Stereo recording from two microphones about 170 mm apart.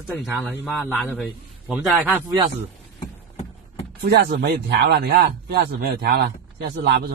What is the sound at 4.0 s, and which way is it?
Speech, 80° right.